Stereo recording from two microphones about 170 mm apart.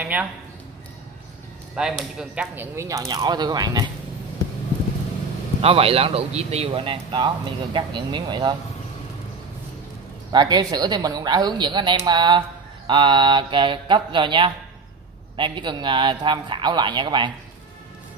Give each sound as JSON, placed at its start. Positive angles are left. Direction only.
{"t": 0.0, "sound": "a man's voice", "side_deg": -10}
{"t": 1.8, "sound": "a woman's voice", "side_deg": -5}
{"t": 5.6, "sound": "a man's voice", "side_deg": -35}
{"t": 10.3, "sound": "a woman's voice", "side_deg": -25}